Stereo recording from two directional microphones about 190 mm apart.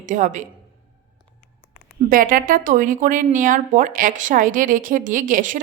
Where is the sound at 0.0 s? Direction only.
40° right (ahead or behind).